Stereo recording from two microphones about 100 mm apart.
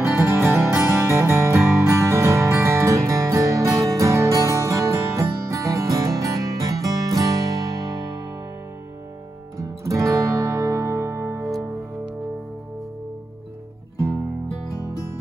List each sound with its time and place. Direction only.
0.2 s music: 25° right (ahead or behind)
9.6 s music: 30° right (ahead or behind)